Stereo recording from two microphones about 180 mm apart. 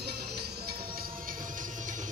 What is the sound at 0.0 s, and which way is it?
Music, 60° right (ahead or behind).